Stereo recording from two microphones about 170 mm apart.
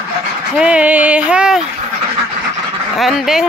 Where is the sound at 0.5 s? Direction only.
5° right (ahead or behind).